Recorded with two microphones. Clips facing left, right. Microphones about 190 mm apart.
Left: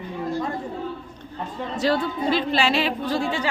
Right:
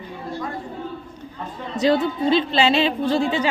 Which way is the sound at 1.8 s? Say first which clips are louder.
Right 4 dB; 20° right (ahead or behind).